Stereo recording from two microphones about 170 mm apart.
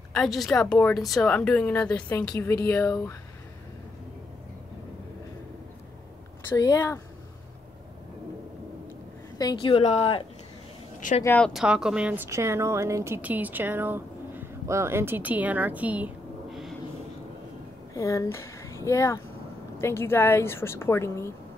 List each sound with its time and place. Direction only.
0.1 s a woman's voice: centre (ahead or behind)
6.5 s speech: 20° left (ahead or behind)
9.4 s speech: 25° left (ahead or behind)
11.0 s speech: 50° left (ahead or behind)
11.2 s a woman's voice: 5° left (ahead or behind)
11.6 s a woman's voice: 5° right (ahead or behind)
17.9 s a woman's voice: 20° left (ahead or behind)